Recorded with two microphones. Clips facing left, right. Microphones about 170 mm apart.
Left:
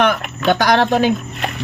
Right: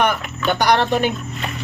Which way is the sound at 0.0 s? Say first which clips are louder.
Left 3 dB; 90° left.